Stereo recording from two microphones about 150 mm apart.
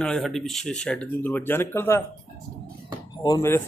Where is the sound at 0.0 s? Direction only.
5° left (ahead or behind).